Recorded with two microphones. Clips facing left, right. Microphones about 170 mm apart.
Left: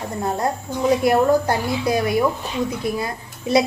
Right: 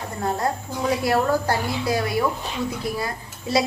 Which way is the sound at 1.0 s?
20° left (ahead or behind).